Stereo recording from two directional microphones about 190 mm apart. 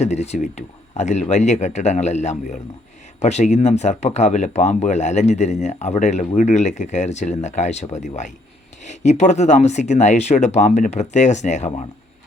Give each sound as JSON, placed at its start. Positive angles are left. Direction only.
{"t": 0.0, "sound": "speech", "side_deg": 35}